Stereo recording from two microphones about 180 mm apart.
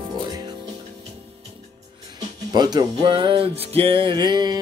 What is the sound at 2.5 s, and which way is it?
Music, 25° right (ahead or behind).